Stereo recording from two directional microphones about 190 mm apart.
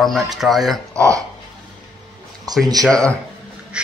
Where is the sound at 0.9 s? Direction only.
15° right (ahead or behind).